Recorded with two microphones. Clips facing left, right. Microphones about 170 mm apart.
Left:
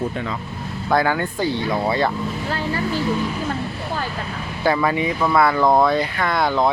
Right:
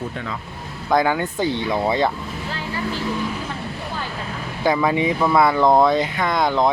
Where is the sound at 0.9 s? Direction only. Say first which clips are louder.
Right 1 dB; 15° right (ahead or behind).